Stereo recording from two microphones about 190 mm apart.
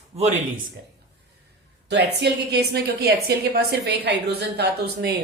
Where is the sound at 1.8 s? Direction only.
60° right (ahead or behind).